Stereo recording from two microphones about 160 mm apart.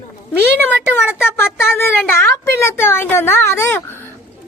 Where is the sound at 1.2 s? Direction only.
15° left (ahead or behind).